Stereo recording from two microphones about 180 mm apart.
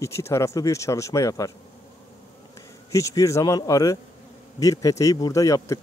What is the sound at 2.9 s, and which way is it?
Speech, 15° left (ahead or behind).